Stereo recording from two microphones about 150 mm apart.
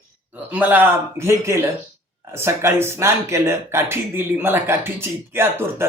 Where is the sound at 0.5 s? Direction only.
10° right (ahead or behind).